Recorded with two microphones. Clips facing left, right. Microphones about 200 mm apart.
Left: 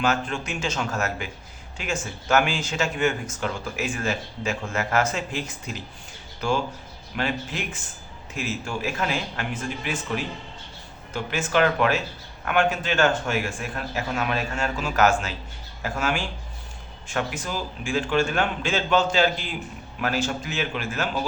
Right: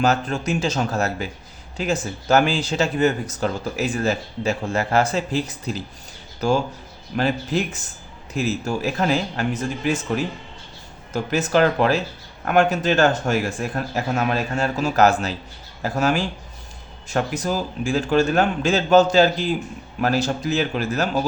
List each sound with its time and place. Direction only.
0.0 s speech: 40° right (ahead or behind)
7.2 s speech: 40° right (ahead or behind)
11.1 s speech: 40° right (ahead or behind)